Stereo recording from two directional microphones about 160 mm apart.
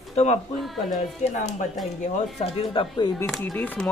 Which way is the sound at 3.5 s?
10° left (ahead or behind).